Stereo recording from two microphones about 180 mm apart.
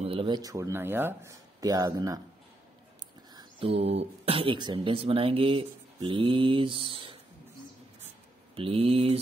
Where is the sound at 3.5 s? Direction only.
30° right (ahead or behind).